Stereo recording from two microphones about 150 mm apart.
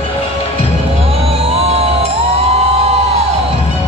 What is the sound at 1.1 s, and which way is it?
Music, 45° right (ahead or behind).